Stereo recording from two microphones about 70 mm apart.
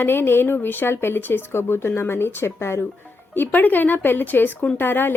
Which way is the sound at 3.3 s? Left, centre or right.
Left.